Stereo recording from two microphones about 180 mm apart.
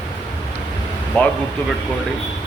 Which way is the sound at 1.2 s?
10° left (ahead or behind).